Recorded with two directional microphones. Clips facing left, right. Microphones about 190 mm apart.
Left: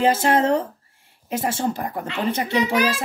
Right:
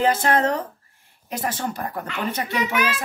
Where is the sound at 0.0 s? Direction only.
25° left (ahead or behind).